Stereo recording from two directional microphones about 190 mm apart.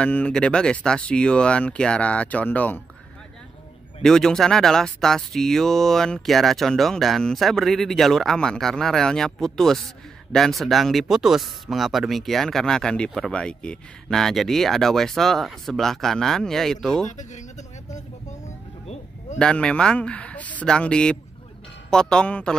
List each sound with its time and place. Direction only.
0.0 s speech: 5° left (ahead or behind)
4.0 s speech: 5° left (ahead or behind)
17.2 s speech: 40° left (ahead or behind)
19.3 s speech: 5° left (ahead or behind)